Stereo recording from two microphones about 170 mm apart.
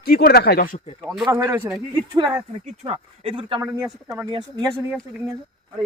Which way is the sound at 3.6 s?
20° right (ahead or behind).